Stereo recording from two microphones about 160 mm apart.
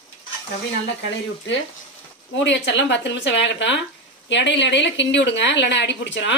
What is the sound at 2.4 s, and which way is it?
Speech, 90° left.